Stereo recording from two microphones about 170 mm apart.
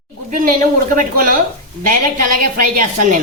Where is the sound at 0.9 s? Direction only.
55° right (ahead or behind).